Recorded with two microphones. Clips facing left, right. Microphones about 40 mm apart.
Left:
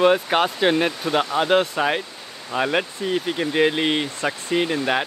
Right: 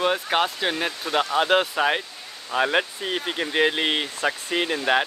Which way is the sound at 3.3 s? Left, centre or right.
Centre.